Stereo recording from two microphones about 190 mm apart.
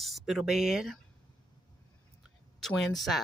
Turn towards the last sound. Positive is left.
turn(degrees=0)  # may be behind; listen again after turning